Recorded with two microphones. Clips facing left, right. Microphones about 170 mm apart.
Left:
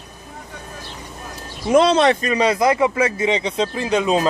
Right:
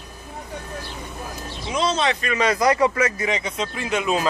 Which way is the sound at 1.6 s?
60° left (ahead or behind).